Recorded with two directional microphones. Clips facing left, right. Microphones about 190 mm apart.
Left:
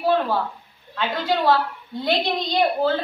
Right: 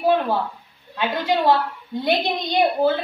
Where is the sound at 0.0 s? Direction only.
15° right (ahead or behind).